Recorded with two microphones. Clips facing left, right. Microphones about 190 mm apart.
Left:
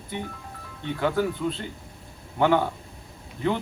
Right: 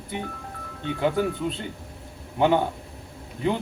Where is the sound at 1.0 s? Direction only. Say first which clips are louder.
Right 1 dB; 15° right (ahead or behind).